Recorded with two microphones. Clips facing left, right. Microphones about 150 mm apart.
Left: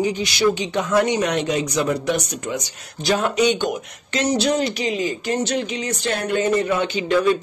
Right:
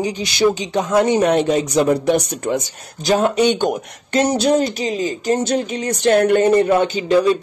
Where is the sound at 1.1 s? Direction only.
40° right (ahead or behind).